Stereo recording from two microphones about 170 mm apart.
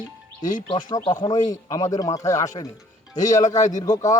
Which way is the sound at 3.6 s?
45° left (ahead or behind).